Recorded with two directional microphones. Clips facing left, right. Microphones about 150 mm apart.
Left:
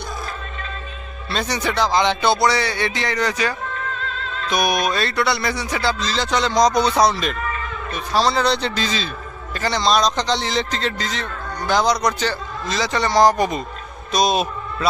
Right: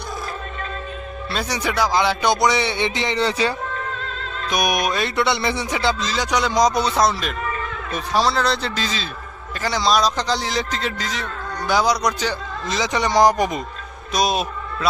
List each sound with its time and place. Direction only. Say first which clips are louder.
1.3 s speech: left 2 dB; 10° right (ahead or behind); by 3.5 s 30° right (ahead or behind)
4.4 s speech: left 1 dB; 15° right (ahead or behind)